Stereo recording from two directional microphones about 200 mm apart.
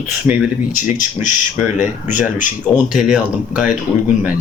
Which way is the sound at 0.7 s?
40° left (ahead or behind).